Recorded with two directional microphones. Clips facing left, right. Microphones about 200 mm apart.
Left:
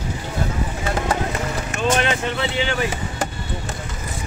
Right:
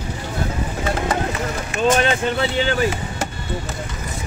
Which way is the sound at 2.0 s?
40° right (ahead or behind).